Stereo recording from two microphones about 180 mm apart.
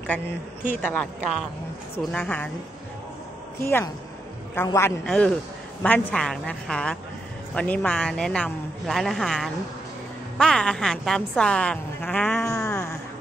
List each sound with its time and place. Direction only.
0.7 s speech: 10° left (ahead or behind)
2.1 s speech: 10° left (ahead or behind)
3.6 s speech: 15° left (ahead or behind)
5.0 s a woman's voice: 5° left (ahead or behind)
12.6 s music: 15° left (ahead or behind)